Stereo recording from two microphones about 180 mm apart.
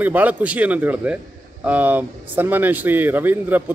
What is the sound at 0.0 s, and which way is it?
Speech, 10° right (ahead or behind).